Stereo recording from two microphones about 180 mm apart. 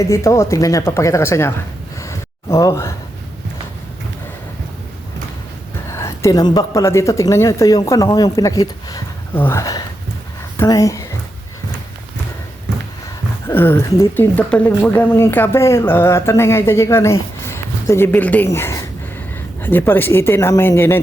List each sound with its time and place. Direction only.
0.0 s speech: 15° left (ahead or behind)
2.0 s a sound: 15° left (ahead or behind)
6.0 s a woman's voice: 15° left (ahead or behind)
13.5 s speech: 10° left (ahead or behind)